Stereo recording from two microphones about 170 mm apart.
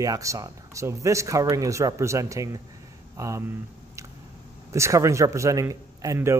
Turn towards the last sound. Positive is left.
turn(degrees=-15)  # may be behind; listen again after turning